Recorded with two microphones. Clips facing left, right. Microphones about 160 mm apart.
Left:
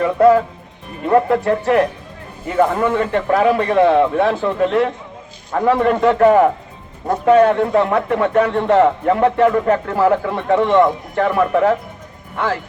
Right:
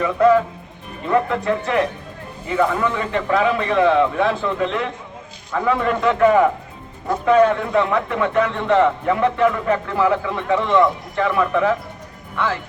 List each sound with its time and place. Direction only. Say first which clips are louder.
0.0 s a man's voice: left 3 dB; 40° left (ahead or behind)